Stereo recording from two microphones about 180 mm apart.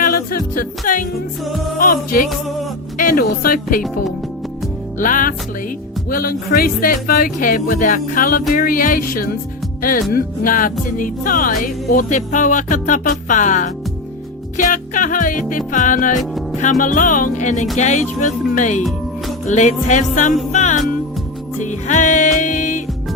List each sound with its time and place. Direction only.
0.0 s music: 55° left (ahead or behind)
3.0 s speech: 50° left (ahead or behind)
4.9 s music: 50° left (ahead or behind)
17.7 s speech: 40° left (ahead or behind)
18.8 s music: centre (ahead or behind)
19.5 s speech: 40° left (ahead or behind)
20.5 s music: 40° left (ahead or behind)